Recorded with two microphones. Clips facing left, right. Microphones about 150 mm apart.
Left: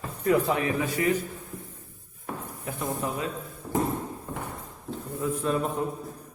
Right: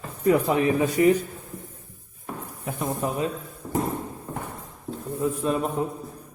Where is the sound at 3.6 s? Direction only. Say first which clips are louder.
Even; centre (ahead or behind).